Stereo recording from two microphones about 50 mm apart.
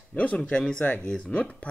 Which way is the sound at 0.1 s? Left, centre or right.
Left.